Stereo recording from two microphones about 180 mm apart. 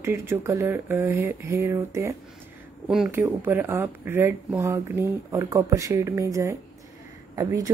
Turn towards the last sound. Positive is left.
turn(degrees=-20)  # may be behind; listen again after turning